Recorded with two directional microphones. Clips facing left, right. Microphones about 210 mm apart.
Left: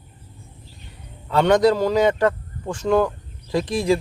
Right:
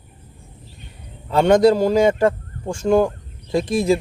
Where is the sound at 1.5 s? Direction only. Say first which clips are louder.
Right 3 dB; 30° right (ahead or behind).